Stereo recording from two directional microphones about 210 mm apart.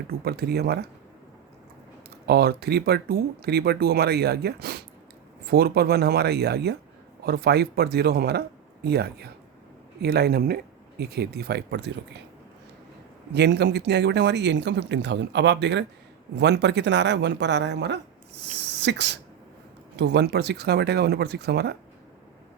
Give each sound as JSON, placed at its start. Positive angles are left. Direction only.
{"t": 0.1, "sound": "speech", "side_deg": -50}
{"t": 2.2, "sound": "speech", "side_deg": -50}
{"t": 13.3, "sound": "speech", "side_deg": -55}